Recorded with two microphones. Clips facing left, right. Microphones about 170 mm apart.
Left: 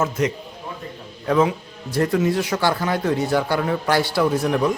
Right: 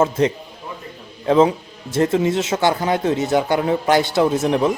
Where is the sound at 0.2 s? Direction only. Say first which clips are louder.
Right 4 dB; 30° right (ahead or behind).